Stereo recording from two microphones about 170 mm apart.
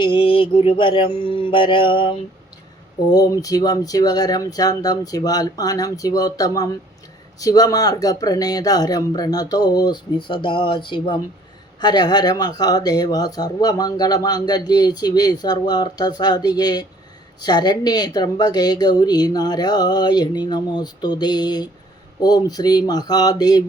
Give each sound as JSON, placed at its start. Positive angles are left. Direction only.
{"t": 0.0, "sound": "speech", "side_deg": 30}